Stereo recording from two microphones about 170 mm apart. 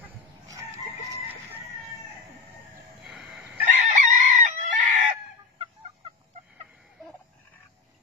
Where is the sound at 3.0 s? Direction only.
Centre (ahead or behind).